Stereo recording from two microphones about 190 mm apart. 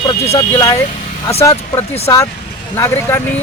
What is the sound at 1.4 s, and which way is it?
Speech, 15° left (ahead or behind).